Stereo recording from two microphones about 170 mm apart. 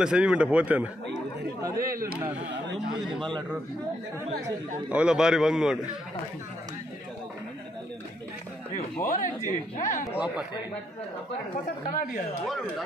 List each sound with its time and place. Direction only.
0.0 s speech: 5° right (ahead or behind)
1.8 s speech: 55° right (ahead or behind)
3.0 s a man's voice: centre (ahead or behind)
4.8 s a man's voice: 5° right (ahead or behind)
9.1 s speech: 50° left (ahead or behind)
10.1 s speech: 5° right (ahead or behind)
11.9 s a woman's voice: 55° left (ahead or behind)